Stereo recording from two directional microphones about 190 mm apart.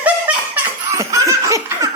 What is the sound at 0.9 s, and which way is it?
Laughter, 15° right (ahead or behind).